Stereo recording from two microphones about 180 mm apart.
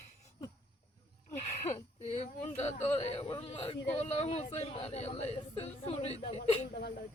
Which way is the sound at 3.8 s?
35° left (ahead or behind).